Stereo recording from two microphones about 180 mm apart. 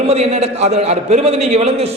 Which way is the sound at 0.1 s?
35° right (ahead or behind).